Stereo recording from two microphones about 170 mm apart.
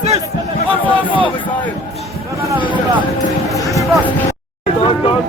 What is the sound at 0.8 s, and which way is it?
Speech, 10° left (ahead or behind).